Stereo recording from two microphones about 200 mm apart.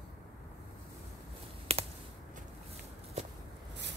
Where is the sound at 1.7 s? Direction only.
30° right (ahead or behind).